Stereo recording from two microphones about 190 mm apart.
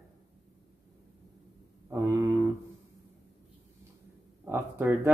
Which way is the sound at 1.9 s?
15° right (ahead or behind).